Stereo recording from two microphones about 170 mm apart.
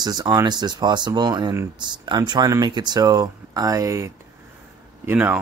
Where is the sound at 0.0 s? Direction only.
25° right (ahead or behind).